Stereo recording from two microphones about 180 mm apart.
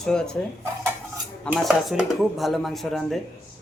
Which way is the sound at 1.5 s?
Centre (ahead or behind).